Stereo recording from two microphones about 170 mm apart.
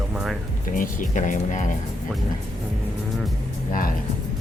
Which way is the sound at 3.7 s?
55° left (ahead or behind).